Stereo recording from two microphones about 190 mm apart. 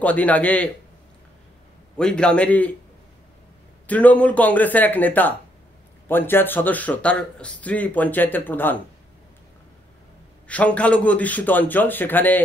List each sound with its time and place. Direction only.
0.0 s a man's voice: 10° left (ahead or behind)
2.0 s a man's voice: 5° left (ahead or behind)
3.8 s a man's voice: 10° left (ahead or behind)
10.5 s a man's voice: 5° left (ahead or behind)